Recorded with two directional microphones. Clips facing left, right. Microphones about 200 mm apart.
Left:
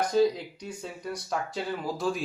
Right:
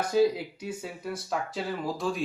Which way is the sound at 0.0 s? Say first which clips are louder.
Even; 5° right (ahead or behind).